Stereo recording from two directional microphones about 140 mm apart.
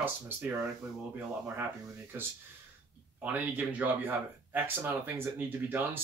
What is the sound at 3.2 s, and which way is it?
Speech, 10° right (ahead or behind).